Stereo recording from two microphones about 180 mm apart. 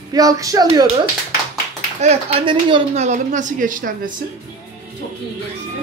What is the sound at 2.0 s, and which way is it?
A woman's voice, 35° right (ahead or behind).